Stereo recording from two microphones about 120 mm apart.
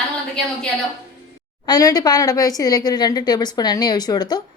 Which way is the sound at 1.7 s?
30° left (ahead or behind).